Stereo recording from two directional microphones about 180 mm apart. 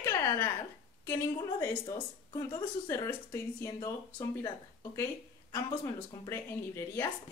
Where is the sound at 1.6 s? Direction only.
15° left (ahead or behind).